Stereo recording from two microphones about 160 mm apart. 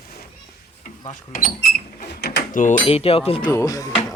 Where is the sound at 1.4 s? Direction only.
65° left (ahead or behind).